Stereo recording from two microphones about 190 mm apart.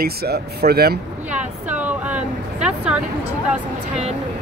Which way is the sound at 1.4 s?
10° right (ahead or behind).